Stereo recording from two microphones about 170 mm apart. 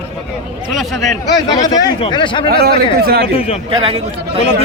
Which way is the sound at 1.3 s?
25° left (ahead or behind).